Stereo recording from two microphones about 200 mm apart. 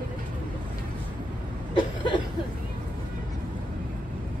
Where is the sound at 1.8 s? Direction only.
25° left (ahead or behind).